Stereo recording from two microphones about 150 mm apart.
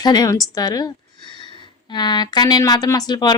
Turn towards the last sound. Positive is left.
turn(degrees=30)  # may be behind; listen again after turning